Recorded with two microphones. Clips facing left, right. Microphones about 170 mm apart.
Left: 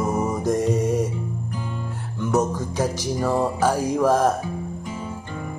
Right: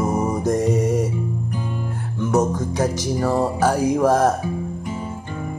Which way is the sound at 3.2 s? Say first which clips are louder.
Right 1 dB; 10° right (ahead or behind).